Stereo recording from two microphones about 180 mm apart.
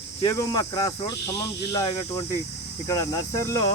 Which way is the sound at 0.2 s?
20° left (ahead or behind).